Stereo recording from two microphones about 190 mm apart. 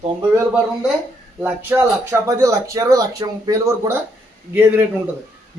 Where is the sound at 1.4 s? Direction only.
10° right (ahead or behind).